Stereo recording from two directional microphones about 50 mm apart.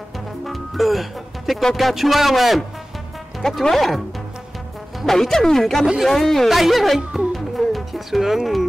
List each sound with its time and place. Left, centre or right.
0.5 s speech: centre
3.6 s speech: centre
5.0 s speech: centre
7.0 s speech: centre
7.3 s music: centre